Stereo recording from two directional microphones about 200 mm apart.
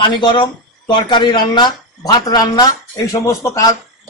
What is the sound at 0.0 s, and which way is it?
Speech, 20° left (ahead or behind).